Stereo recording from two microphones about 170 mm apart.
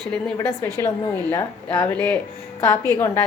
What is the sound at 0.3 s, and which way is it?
A woman's voice, 15° left (ahead or behind).